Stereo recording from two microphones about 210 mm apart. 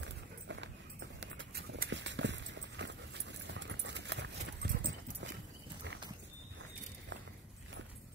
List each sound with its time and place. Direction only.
0.0 s clip-clop: 60° right (ahead or behind)